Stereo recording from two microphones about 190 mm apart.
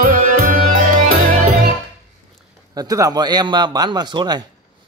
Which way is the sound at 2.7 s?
20° right (ahead or behind).